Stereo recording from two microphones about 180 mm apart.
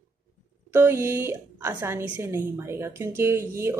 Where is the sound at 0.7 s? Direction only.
15° right (ahead or behind).